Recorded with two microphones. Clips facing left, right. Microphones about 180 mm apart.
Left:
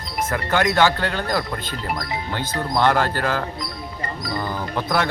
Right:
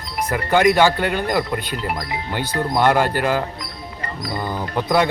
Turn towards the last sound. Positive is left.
turn(degrees=-15)  # may be behind; listen again after turning